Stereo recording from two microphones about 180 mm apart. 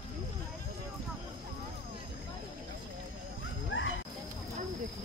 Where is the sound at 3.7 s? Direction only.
90° left.